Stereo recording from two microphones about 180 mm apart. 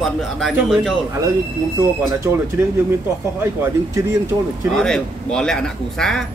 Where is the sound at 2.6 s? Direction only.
10° right (ahead or behind).